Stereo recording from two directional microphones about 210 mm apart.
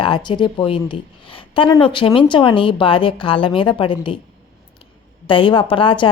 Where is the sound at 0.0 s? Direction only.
20° left (ahead or behind).